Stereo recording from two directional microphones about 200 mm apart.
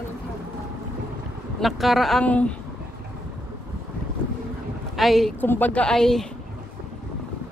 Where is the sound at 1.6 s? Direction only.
Centre (ahead or behind).